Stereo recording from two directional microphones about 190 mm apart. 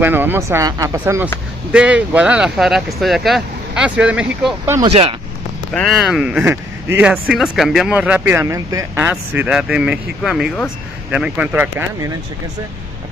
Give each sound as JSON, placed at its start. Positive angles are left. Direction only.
{"t": 0.0, "sound": "speech", "side_deg": -10}
{"t": 4.8, "sound": "speech", "side_deg": -30}
{"t": 5.7, "sound": "speech", "side_deg": 0}